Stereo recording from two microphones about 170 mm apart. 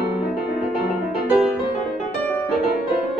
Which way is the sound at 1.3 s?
5° right (ahead or behind).